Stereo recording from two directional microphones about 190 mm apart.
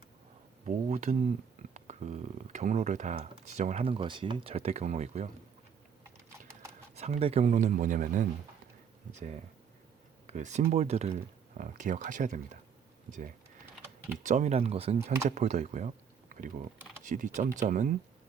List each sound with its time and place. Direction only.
0.6 s speech: 35° right (ahead or behind)
6.9 s speech: 35° right (ahead or behind)
10.2 s speech: 35° right (ahead or behind)
17.0 s speech: 40° right (ahead or behind)